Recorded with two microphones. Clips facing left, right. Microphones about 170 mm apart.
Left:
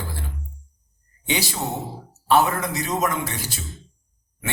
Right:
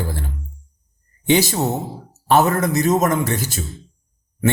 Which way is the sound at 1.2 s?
45° right (ahead or behind).